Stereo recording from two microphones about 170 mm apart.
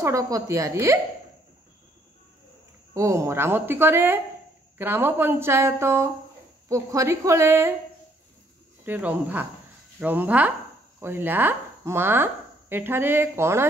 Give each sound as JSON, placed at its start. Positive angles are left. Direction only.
{"t": 0.0, "sound": "a woman's voice", "side_deg": -20}
{"t": 2.9, "sound": "a woman's voice", "side_deg": -15}
{"t": 8.8, "sound": "a woman's voice", "side_deg": -10}